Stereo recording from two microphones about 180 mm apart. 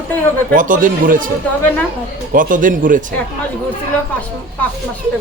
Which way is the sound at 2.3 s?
50° right (ahead or behind).